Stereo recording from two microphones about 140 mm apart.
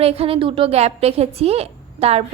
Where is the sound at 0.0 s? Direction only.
45° right (ahead or behind).